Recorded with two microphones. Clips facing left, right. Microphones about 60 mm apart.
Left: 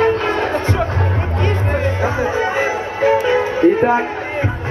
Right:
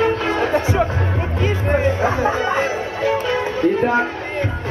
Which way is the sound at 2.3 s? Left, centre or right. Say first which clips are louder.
Left 2 dB; centre.